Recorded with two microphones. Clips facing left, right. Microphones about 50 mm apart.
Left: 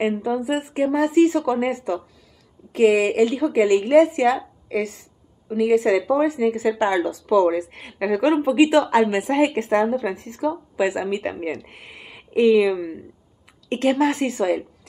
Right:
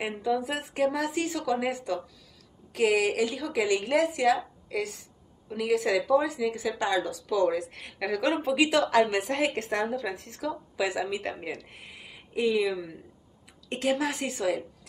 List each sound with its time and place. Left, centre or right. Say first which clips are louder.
0.4 s speech: left 6 dB; centre
0.9 s speech: left 12 dB; left
8.2 s speech: left 8 dB; centre
11.5 s speech: left 7 dB; left
12.7 s speech: left 8 dB; left